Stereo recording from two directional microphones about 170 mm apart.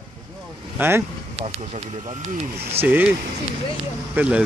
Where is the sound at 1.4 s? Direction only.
40° right (ahead or behind).